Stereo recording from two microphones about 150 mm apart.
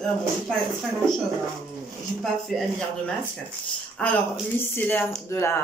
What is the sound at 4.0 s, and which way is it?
Speech, 5° left (ahead or behind).